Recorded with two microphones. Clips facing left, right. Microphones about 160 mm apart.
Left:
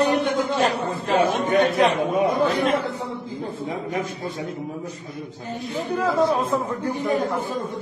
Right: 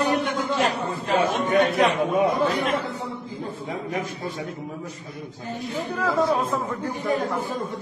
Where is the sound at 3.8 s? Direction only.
30° left (ahead or behind).